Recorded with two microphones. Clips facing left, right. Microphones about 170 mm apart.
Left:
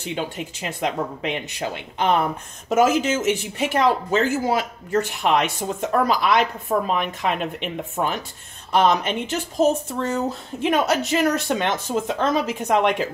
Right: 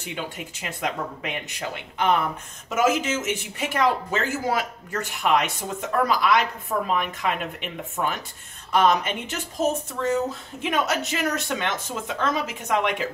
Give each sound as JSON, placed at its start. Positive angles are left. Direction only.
{"t": 0.0, "sound": "speech", "side_deg": 30}